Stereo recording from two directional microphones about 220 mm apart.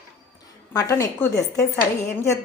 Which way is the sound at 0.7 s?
15° left (ahead or behind).